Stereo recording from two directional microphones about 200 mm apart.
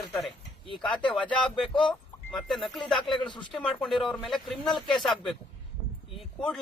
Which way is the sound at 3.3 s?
25° left (ahead or behind).